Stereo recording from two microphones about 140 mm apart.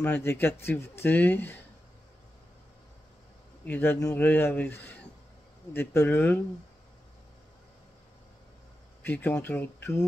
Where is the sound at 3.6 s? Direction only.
15° left (ahead or behind).